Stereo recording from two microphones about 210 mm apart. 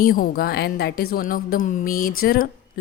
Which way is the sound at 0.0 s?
45° left (ahead or behind).